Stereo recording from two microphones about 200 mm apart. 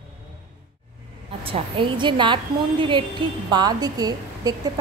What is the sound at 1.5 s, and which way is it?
A woman's voice, 25° right (ahead or behind).